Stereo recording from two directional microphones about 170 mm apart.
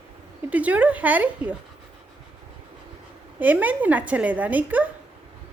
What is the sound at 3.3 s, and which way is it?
Speech, 10° right (ahead or behind).